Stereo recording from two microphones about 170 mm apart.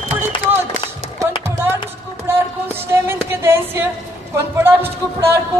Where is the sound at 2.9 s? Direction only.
15° right (ahead or behind).